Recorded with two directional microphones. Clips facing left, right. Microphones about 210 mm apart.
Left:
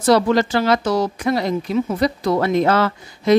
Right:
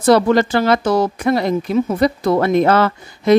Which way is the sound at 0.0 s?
55° right (ahead or behind).